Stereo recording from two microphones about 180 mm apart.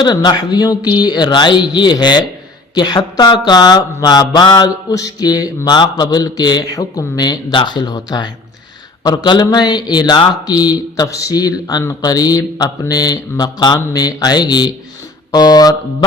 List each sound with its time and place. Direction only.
0.0 s speech: 25° left (ahead or behind)